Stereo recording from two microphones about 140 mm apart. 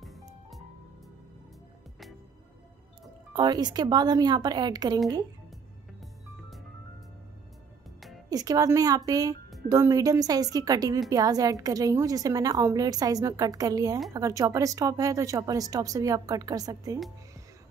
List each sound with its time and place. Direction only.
3.3 s a woman's voice: 30° right (ahead or behind)
8.3 s a woman's voice: 25° right (ahead or behind)